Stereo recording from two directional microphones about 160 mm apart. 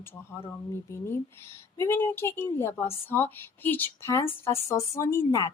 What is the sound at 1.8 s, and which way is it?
A woman's voice, 15° left (ahead or behind).